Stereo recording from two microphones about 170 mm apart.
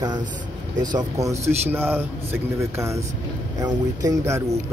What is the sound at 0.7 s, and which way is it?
A man's voice, 20° right (ahead or behind).